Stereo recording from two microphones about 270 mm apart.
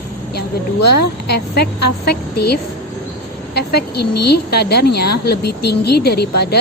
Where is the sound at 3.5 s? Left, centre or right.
Left.